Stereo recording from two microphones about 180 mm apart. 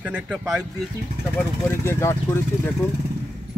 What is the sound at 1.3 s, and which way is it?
Speech, 15° left (ahead or behind).